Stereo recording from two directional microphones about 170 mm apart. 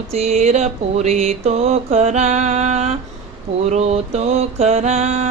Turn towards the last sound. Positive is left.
turn(degrees=-35)  # may be behind; listen again after turning